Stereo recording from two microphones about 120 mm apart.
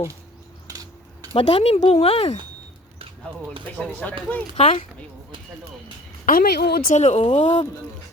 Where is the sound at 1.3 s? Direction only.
60° left (ahead or behind).